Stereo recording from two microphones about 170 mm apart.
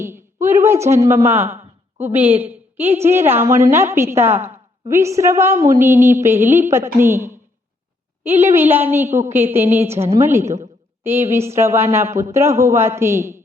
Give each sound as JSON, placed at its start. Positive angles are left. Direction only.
{"t": 0.0, "sound": "a sound", "side_deg": -15}
{"t": 1.0, "sound": "speech", "side_deg": -15}
{"t": 8.4, "sound": "speech", "side_deg": -10}